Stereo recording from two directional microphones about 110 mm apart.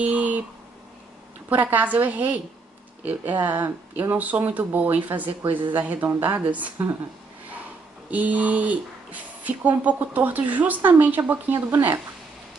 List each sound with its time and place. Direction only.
0.0 s a sound: 15° right (ahead or behind)
1.5 s speech: 15° right (ahead or behind)
8.1 s speech: 15° right (ahead or behind)